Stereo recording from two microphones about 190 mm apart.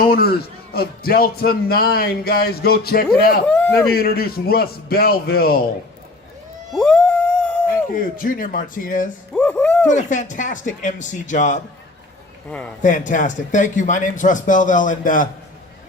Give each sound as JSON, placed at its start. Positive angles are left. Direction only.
{"t": 0.0, "sound": "speech", "side_deg": 50}
{"t": 3.4, "sound": "speech", "side_deg": 10}
{"t": 3.8, "sound": "speech", "side_deg": 55}
{"t": 6.7, "sound": "a sound", "side_deg": 5}
{"t": 7.9, "sound": "speech", "side_deg": 45}
{"t": 9.3, "sound": "a sound", "side_deg": 5}
{"t": 9.9, "sound": "speech", "side_deg": 40}
{"t": 12.5, "sound": "speech", "side_deg": 5}
{"t": 12.8, "sound": "speech", "side_deg": 40}